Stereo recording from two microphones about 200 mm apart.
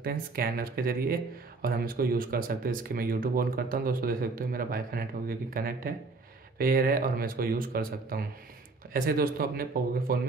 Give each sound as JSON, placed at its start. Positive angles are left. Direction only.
{"t": 0.0, "sound": "speech", "side_deg": -50}